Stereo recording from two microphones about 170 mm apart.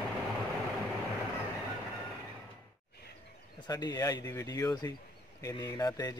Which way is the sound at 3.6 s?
25° left (ahead or behind).